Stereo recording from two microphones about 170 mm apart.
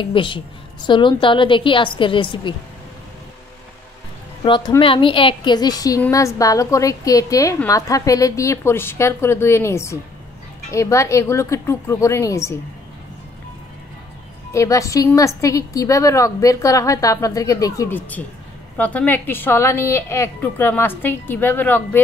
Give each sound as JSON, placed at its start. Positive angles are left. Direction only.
{"t": 0.0, "sound": "a woman's voice", "side_deg": 30}
{"t": 4.4, "sound": "a woman's voice", "side_deg": 30}
{"t": 14.5, "sound": "a woman's voice", "side_deg": 20}